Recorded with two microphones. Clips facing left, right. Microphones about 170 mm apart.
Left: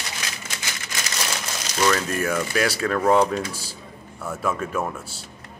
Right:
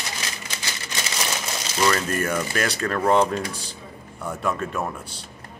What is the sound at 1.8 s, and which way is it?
Speech, centre (ahead or behind).